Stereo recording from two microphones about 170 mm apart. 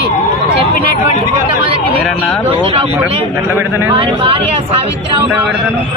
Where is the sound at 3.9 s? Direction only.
35° right (ahead or behind).